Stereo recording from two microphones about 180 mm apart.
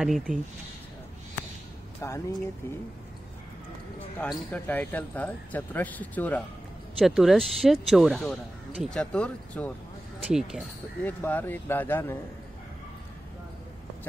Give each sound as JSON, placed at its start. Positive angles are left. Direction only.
{"t": 0.0, "sound": "speech", "side_deg": 0}
{"t": 2.0, "sound": "speech", "side_deg": 15}
{"t": 4.3, "sound": "speech", "side_deg": 5}
{"t": 7.0, "sound": "speech", "side_deg": 0}
{"t": 11.1, "sound": "speech", "side_deg": 10}